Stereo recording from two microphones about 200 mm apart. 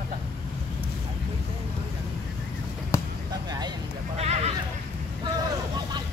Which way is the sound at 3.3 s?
20° right (ahead or behind).